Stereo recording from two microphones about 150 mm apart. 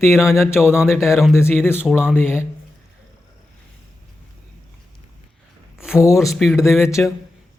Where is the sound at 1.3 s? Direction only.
15° left (ahead or behind).